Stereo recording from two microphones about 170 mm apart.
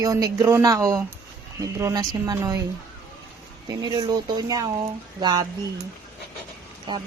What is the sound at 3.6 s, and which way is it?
Speech, 20° right (ahead or behind).